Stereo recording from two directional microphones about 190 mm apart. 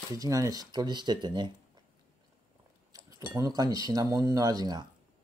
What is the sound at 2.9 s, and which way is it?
Speech, 15° right (ahead or behind).